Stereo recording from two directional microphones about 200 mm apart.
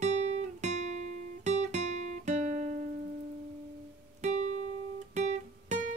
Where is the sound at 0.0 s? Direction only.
35° right (ahead or behind).